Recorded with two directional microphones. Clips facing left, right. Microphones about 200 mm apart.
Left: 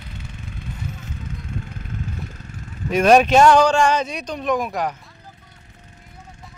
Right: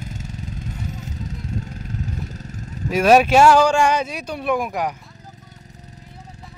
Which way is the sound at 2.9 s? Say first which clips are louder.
Even; 5° right (ahead or behind).